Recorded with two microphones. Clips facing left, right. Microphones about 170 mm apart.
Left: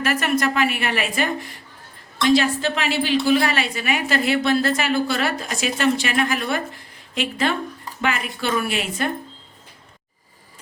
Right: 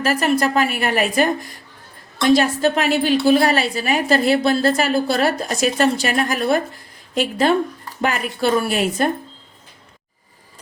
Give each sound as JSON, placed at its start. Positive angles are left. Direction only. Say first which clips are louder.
{"t": 0.0, "sound": "a woman's voice", "louder": "right 3 dB", "side_deg": -35}